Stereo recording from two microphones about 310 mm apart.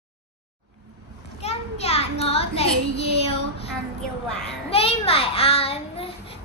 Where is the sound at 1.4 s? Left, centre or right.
Centre.